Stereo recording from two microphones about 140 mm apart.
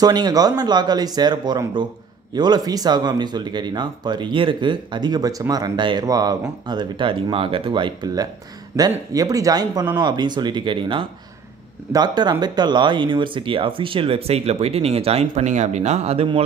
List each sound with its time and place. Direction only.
0.0 s speech: 30° right (ahead or behind); by 16.3 s 50° right (ahead or behind)